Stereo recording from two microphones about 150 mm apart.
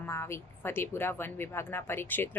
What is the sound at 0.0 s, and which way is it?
A woman's voice, 15° left (ahead or behind).